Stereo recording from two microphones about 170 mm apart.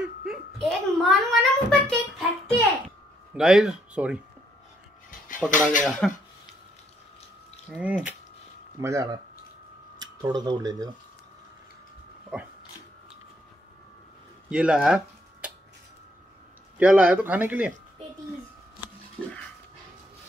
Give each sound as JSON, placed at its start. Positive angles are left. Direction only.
{"t": 0.2, "sound": "a sound", "side_deg": 0}
{"t": 3.3, "sound": "speech", "side_deg": -5}
{"t": 5.5, "sound": "speech", "side_deg": 50}
{"t": 5.9, "sound": "speech", "side_deg": 5}
{"t": 7.7, "sound": "speech", "side_deg": -5}
{"t": 8.8, "sound": "speech", "side_deg": -20}
{"t": 14.5, "sound": "speech", "side_deg": -5}
{"t": 16.7, "sound": "speech", "side_deg": -5}
{"t": 19.2, "sound": "dog", "side_deg": 0}